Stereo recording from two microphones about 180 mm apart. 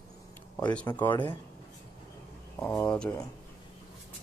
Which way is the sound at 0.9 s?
15° left (ahead or behind).